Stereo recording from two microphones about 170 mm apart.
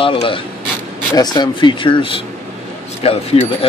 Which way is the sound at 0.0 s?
30° left (ahead or behind).